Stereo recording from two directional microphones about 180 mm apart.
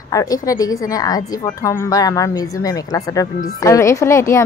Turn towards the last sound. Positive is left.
turn(degrees=15)  # may be behind; listen again after turning